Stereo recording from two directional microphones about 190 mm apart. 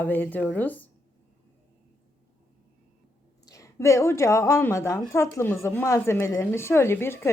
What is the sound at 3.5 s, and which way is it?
A woman's voice, 15° left (ahead or behind).